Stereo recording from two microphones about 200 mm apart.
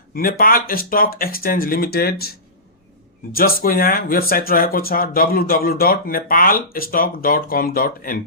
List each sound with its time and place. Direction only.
0.1 s speech: 45° left (ahead or behind)
3.3 s speech: 45° left (ahead or behind)